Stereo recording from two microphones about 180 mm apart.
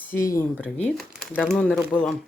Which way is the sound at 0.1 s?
15° left (ahead or behind).